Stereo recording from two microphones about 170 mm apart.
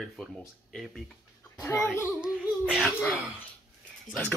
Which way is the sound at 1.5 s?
15° left (ahead or behind).